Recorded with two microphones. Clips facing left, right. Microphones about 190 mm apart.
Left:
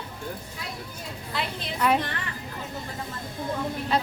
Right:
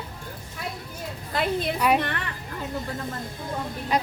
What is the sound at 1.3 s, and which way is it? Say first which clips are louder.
Speech: right 8 dB; 50° right (ahead or behind).